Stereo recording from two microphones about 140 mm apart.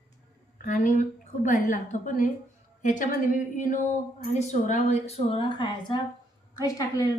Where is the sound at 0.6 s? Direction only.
65° left (ahead or behind); by 6.0 s 35° left (ahead or behind).